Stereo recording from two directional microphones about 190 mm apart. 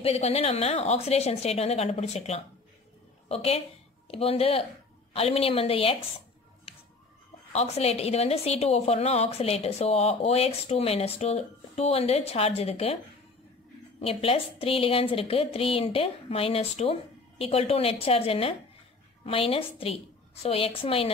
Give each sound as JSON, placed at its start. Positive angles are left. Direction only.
{"t": 0.0, "sound": "a woman's voice", "side_deg": 30}
{"t": 7.5, "sound": "a woman's voice", "side_deg": 35}
{"t": 14.0, "sound": "a woman's voice", "side_deg": 30}